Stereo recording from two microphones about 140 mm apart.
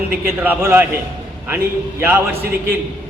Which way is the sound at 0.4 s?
15° right (ahead or behind).